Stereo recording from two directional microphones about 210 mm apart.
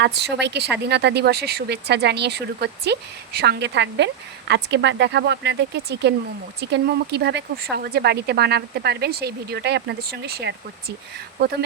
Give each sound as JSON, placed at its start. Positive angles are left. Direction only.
{"t": 0.0, "sound": "speech", "side_deg": -55}